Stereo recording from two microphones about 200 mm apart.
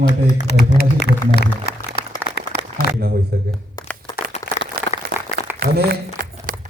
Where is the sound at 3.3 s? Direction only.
50° right (ahead or behind).